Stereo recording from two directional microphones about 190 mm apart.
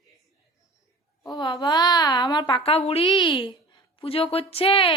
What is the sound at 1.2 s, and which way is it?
A woman's voice, 25° left (ahead or behind).